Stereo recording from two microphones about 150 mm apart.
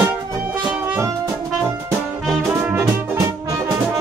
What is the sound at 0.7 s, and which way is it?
Music, 10° right (ahead or behind).